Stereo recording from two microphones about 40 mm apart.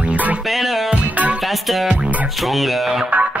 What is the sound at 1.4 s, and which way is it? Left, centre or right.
Music, centre.